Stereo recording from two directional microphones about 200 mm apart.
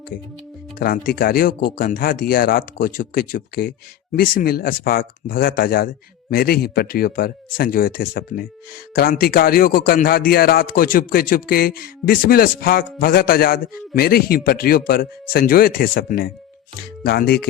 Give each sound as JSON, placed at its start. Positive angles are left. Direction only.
{"t": 0.8, "sound": "a man's voice", "side_deg": 45}